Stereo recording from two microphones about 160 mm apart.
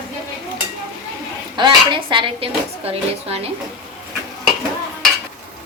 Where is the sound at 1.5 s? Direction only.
30° right (ahead or behind).